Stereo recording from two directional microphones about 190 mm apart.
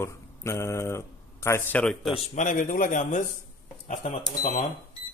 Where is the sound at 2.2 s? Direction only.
45° left (ahead or behind).